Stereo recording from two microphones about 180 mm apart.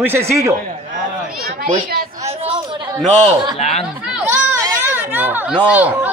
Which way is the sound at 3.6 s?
35° left (ahead or behind).